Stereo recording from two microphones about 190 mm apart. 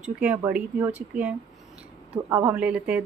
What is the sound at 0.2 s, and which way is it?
Speech, 10° right (ahead or behind).